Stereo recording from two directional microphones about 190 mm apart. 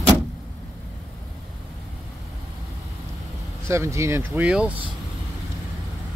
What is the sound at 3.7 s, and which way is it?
Speech, 15° right (ahead or behind).